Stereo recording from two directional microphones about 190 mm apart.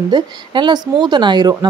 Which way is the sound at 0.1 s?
25° right (ahead or behind).